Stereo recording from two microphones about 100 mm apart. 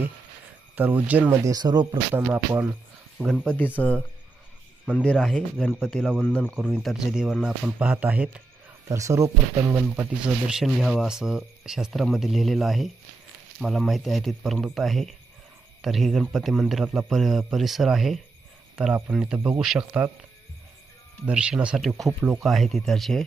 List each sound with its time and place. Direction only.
0.8 s speech: 15° right (ahead or behind)
1.3 s speech: 40° right (ahead or behind)
3.4 s speech: 15° left (ahead or behind)
5.1 s speech: centre (ahead or behind)
6.2 s speech: 15° left (ahead or behind)
6.5 s speech: 5° left (ahead or behind)
6.9 s speech: 5° right (ahead or behind)
8.9 s speech: 30° right (ahead or behind)
10.2 s speech: 5° right (ahead or behind)
21.2 s speech: 10° right (ahead or behind)
21.8 s speech: centre (ahead or behind)